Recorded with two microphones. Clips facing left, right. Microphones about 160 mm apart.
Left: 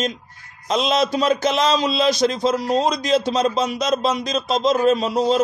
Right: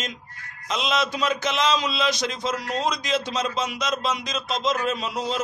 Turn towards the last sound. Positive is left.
turn(degrees=35)  # may be behind; listen again after turning